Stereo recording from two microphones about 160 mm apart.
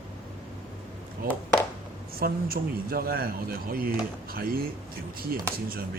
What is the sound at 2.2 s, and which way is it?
Speech, 70° right (ahead or behind).